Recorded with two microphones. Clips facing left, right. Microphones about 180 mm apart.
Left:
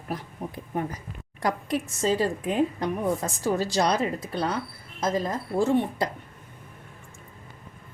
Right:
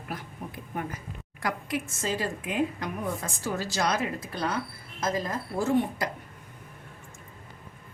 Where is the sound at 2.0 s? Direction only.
35° left (ahead or behind).